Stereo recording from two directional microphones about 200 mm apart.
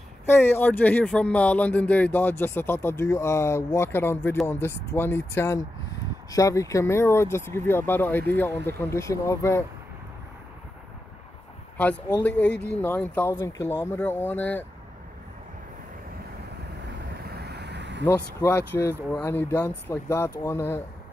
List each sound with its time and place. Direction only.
0.3 s speech: 10° left (ahead or behind)
11.7 s speech: 5° left (ahead or behind)
17.4 s a sound: 55° right (ahead or behind)
18.0 s speech: 10° left (ahead or behind)